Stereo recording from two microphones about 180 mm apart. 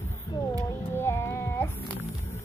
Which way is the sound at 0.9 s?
15° left (ahead or behind).